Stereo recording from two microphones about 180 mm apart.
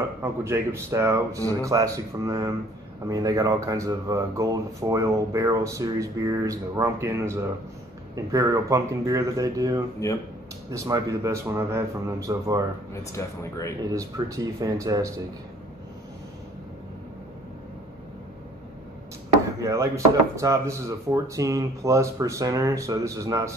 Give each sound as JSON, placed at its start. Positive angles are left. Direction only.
{"t": 0.2, "sound": "speech", "side_deg": -15}
{"t": 12.9, "sound": "speech", "side_deg": 15}
{"t": 13.9, "sound": "speech", "side_deg": -20}
{"t": 19.6, "sound": "speech", "side_deg": -15}